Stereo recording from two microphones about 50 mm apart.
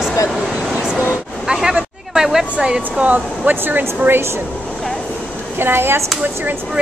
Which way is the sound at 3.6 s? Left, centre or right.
Right.